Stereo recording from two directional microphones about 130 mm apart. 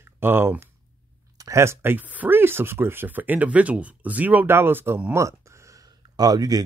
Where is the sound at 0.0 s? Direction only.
15° right (ahead or behind).